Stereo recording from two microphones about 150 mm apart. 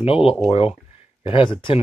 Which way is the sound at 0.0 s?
40° left (ahead or behind).